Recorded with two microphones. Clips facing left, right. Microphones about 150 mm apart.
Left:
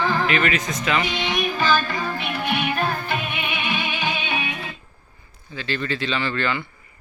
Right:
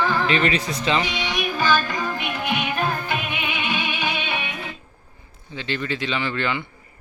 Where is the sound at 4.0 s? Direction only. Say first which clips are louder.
Even; 15° left (ahead or behind).